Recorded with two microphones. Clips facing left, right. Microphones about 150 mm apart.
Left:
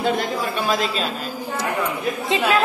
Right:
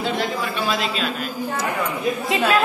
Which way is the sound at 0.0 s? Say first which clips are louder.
Left 2 dB; 45° left (ahead or behind).